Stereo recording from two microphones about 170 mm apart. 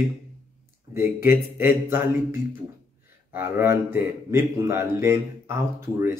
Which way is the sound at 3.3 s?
15° right (ahead or behind).